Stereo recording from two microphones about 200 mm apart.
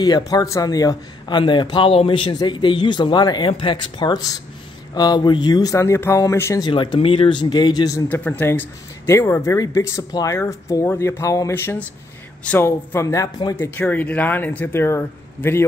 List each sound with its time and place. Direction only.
0.3 s a man's voice: 15° left (ahead or behind)
8.1 s speech: 10° left (ahead or behind)